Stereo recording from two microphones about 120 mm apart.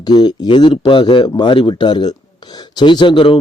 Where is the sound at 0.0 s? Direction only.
35° left (ahead or behind).